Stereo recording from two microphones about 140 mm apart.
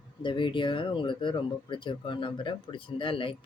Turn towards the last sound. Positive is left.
turn(degrees=35)  # may be behind; listen again after turning